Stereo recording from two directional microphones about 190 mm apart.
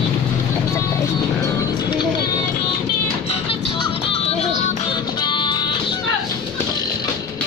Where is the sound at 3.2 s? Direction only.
30° left (ahead or behind).